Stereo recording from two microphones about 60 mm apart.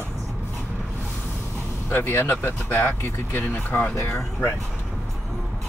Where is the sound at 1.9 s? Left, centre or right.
Left.